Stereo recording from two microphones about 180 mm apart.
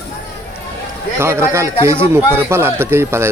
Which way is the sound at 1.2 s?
15° right (ahead or behind).